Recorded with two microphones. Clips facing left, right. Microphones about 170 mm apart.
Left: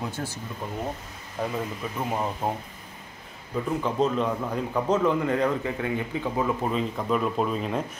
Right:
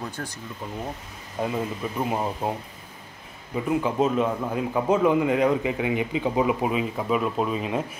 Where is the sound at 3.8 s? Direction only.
10° right (ahead or behind).